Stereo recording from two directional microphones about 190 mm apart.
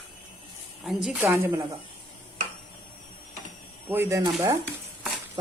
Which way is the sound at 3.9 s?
15° right (ahead or behind).